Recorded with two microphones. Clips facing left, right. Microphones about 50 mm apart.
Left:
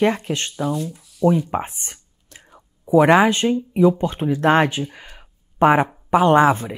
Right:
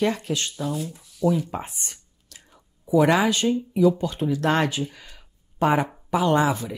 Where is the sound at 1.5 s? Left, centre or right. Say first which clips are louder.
Left 7 dB; left.